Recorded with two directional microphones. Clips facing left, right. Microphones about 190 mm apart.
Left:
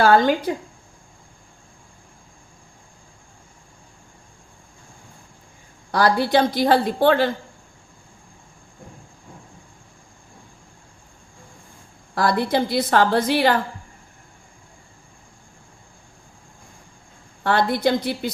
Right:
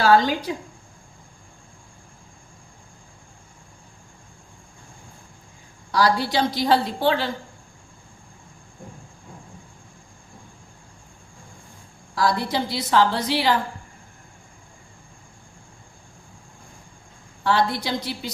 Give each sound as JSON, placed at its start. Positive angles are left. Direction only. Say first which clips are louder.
{"t": 0.0, "sound": "a woman's voice", "louder": "left 2 dB", "side_deg": 55}
{"t": 5.9, "sound": "a woman's voice", "louder": "left 3 dB", "side_deg": 55}
{"t": 12.1, "sound": "a woman's voice", "louder": "left 3 dB", "side_deg": 55}
{"t": 17.4, "sound": "a woman's voice", "louder": "left 3 dB", "side_deg": 55}